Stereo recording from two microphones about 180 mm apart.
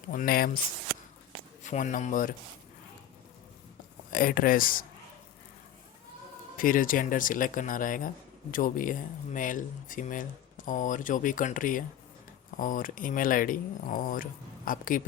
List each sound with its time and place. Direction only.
0.1 s speech: 50° left (ahead or behind)
1.6 s speech: 45° left (ahead or behind)
4.1 s speech: 50° left (ahead or behind)
6.6 s speech: 50° left (ahead or behind)